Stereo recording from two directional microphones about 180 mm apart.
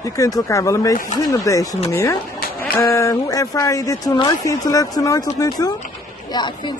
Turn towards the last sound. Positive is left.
turn(degrees=25)  # may be behind; listen again after turning